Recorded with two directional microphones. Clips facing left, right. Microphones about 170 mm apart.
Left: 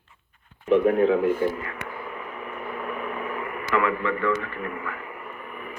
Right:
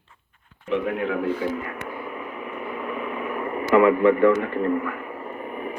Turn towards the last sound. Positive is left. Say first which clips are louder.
# right 6 dB
turn(degrees=-40)  # may be behind; listen again after turning